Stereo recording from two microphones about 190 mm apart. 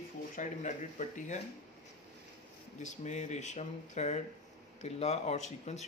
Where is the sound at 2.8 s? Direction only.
40° left (ahead or behind).